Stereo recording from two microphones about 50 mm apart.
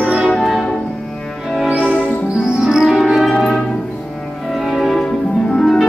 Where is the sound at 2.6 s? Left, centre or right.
Centre.